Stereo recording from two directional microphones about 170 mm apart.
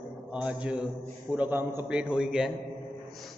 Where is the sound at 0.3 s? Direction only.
5° right (ahead or behind).